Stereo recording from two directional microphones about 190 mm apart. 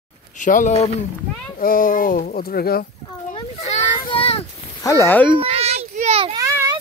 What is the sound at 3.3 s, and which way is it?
Children playing, 35° left (ahead or behind).